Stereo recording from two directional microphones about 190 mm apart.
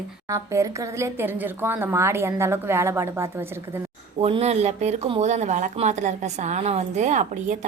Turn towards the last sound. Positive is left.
turn(degrees=-40)  # may be behind; listen again after turning